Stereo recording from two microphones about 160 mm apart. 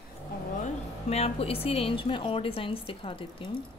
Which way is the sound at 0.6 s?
40° left (ahead or behind).